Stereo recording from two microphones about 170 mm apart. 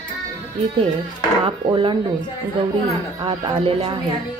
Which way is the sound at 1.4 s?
30° right (ahead or behind).